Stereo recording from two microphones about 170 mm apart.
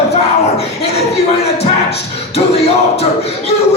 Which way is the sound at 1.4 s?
40° left (ahead or behind).